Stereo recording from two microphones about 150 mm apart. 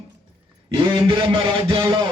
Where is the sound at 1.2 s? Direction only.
35° right (ahead or behind).